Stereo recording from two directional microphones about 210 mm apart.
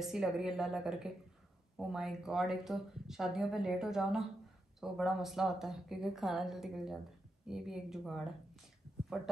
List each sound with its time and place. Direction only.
0.0 s speech: centre (ahead or behind)